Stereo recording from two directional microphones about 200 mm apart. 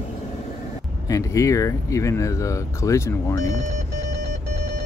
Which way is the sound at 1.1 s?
15° left (ahead or behind).